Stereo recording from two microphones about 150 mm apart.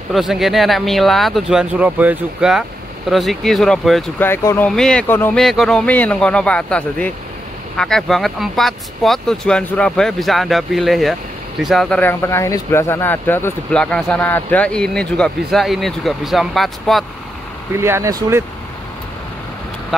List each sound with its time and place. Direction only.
0.1 s speech: centre (ahead or behind)
4.2 s speech: 15° left (ahead or behind)
4.6 s speech: 5° left (ahead or behind)
5.4 s speech: centre (ahead or behind)
17.7 s speech: 15° right (ahead or behind)
19.9 s duck: centre (ahead or behind)